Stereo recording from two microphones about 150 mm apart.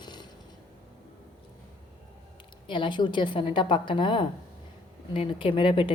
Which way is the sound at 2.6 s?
30° left (ahead or behind).